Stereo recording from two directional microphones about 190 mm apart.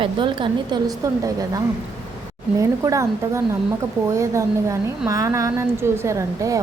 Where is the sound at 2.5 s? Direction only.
15° right (ahead or behind).